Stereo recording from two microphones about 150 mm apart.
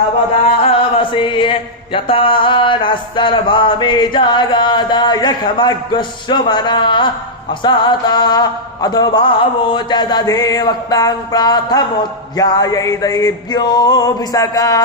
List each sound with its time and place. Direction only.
0.7 s chant: 35° left (ahead or behind)
7.6 s mantra: 30° left (ahead or behind)